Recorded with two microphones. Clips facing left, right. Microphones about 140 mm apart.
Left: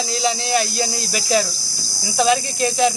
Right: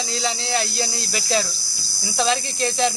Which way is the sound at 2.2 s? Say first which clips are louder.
Left 4 dB; 15° left (ahead or behind).